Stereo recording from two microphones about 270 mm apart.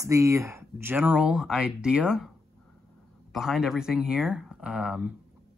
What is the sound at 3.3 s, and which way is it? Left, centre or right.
Speech, centre.